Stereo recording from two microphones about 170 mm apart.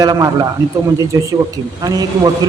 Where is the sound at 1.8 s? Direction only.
25° right (ahead or behind).